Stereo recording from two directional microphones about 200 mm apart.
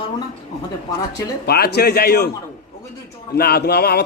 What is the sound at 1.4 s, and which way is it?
Speech, 50° left (ahead or behind).